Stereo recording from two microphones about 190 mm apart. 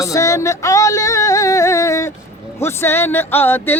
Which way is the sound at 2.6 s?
15° left (ahead or behind).